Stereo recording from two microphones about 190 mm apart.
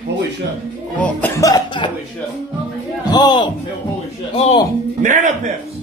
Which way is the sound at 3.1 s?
25° left (ahead or behind).